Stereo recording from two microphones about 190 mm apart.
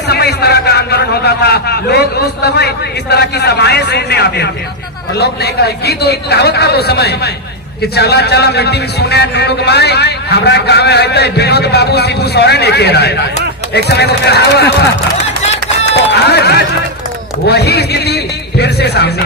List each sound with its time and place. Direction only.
0.1 s a man's voice: 60° left (ahead or behind)
16.0 s run: 60° left (ahead or behind)
17.4 s a man's voice: 60° left (ahead or behind)